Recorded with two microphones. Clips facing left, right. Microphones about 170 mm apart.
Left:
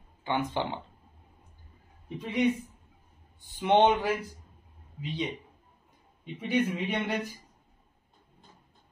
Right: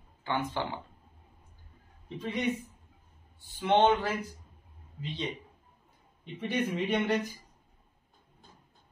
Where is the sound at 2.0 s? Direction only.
15° left (ahead or behind).